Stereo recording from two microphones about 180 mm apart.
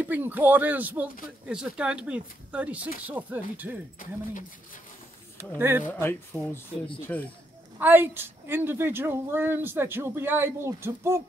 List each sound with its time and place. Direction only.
0.0 s a woman's voice: 10° right (ahead or behind)
4.0 s speech: 45° left (ahead or behind)
5.4 s a woman's voice: 15° right (ahead or behind)
5.9 s speech: 10° left (ahead or behind)
7.8 s a woman's voice: 10° right (ahead or behind)